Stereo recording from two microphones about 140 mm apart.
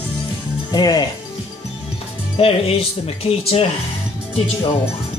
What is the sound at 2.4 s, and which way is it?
Speech, 45° left (ahead or behind).